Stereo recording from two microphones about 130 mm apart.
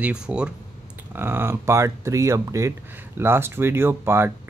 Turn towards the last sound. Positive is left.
turn(degrees=-20)  # may be behind; listen again after turning